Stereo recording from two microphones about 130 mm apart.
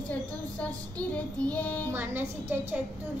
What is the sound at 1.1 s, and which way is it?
Speech, 10° left (ahead or behind).